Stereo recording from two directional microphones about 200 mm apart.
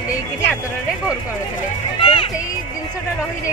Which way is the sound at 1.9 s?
25° left (ahead or behind).